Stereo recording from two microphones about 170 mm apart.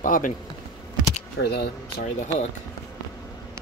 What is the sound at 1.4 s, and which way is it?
Speech, 75° left (ahead or behind).